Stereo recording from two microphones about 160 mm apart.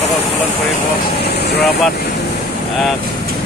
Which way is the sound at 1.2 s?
90° left.